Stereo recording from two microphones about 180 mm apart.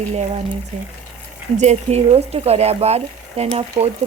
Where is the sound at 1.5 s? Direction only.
35° right (ahead or behind).